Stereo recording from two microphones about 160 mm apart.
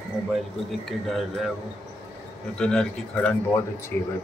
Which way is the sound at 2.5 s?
5° left (ahead or behind).